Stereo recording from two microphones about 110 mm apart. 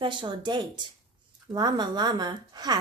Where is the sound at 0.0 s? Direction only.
45° right (ahead or behind).